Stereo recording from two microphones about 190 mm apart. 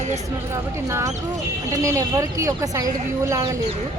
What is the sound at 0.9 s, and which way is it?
A woman's voice, 15° right (ahead or behind).